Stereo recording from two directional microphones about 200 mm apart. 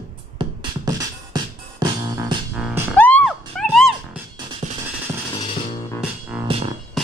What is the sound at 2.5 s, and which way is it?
Music, centre (ahead or behind).